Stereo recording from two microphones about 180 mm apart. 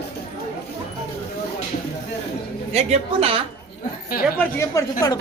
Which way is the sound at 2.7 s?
35° right (ahead or behind).